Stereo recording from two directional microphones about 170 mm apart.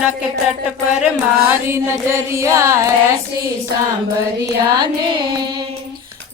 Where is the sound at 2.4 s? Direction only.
20° right (ahead or behind).